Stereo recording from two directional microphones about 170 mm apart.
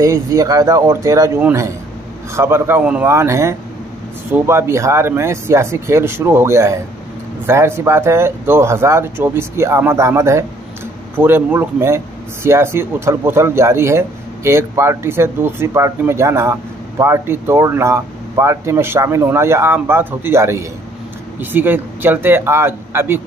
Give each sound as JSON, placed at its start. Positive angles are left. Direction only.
{"t": 0.0, "sound": "a man's voice", "side_deg": -20}